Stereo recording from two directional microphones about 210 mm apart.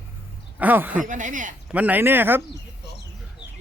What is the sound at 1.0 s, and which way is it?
Speech, 35° right (ahead or behind).